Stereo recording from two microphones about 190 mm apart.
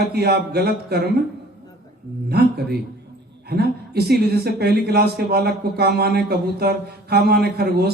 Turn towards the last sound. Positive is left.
turn(degrees=-60)  # may be behind; listen again after turning